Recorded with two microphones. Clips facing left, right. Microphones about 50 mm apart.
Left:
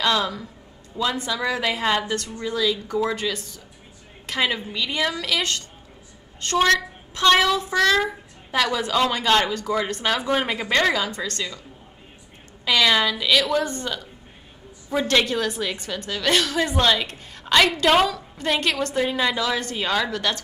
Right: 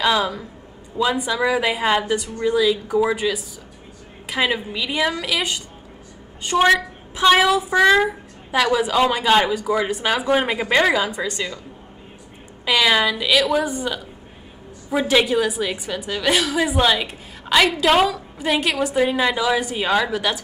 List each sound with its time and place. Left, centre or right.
0.0 s a woman's voice: centre
12.6 s a woman's voice: centre